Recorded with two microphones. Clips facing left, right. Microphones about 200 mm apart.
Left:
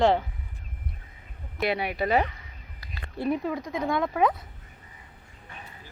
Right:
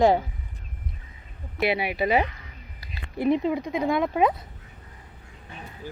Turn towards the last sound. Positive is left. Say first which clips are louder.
# right 2 dB
turn(degrees=-15)  # may be behind; listen again after turning